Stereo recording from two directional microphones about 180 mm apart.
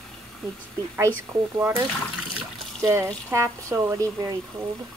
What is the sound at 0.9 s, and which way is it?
Speech, 15° right (ahead or behind).